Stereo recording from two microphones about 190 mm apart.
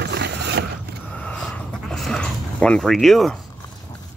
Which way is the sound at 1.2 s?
5° left (ahead or behind).